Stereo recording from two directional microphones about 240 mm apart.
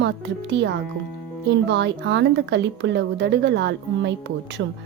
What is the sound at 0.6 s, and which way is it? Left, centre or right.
A woman's voice, right.